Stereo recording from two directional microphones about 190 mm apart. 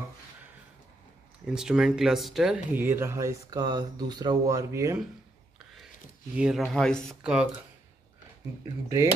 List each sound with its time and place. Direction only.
1.4 s speech: 5° right (ahead or behind)
6.3 s speech: 5° right (ahead or behind)
8.8 s speech: 15° right (ahead or behind)